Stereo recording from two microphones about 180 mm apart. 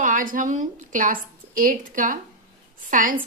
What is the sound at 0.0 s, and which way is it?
Speech, 45° right (ahead or behind).